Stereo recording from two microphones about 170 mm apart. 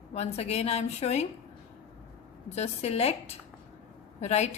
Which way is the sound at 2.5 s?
40° left (ahead or behind).